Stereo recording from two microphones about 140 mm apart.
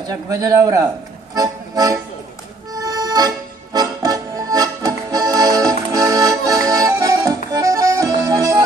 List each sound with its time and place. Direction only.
0.0 s a man's voice: 25° right (ahead or behind)
1.3 s music: 25° right (ahead or behind)
2.7 s accordion: 25° right (ahead or behind)